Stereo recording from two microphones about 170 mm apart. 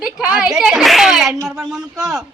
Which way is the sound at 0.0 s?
5° right (ahead or behind).